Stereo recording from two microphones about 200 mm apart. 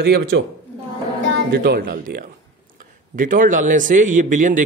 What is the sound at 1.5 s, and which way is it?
A man's voice, 50° right (ahead or behind).